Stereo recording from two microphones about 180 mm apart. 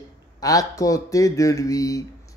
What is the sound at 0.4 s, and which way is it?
Speech, 20° left (ahead or behind).